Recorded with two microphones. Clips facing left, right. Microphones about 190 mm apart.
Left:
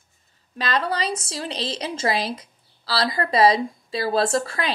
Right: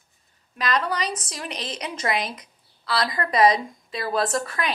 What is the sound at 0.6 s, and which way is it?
A woman's voice, 30° left (ahead or behind).